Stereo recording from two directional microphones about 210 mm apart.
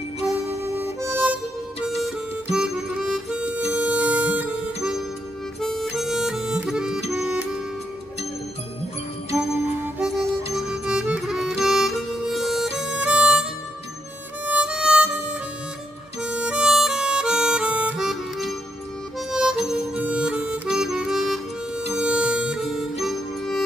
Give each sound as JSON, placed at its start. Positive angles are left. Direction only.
{"t": 0.7, "sound": "harmonica", "side_deg": -10}
{"t": 2.0, "sound": "music", "side_deg": 0}
{"t": 2.5, "sound": "harmonica", "side_deg": -5}
{"t": 7.1, "sound": "music", "side_deg": -5}
{"t": 9.9, "sound": "music", "side_deg": -5}
{"t": 16.2, "sound": "harmonica", "side_deg": -5}